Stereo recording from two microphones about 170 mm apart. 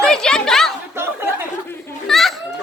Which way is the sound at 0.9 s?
10° right (ahead or behind).